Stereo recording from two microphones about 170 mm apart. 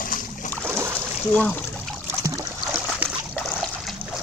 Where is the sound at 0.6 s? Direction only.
15° right (ahead or behind).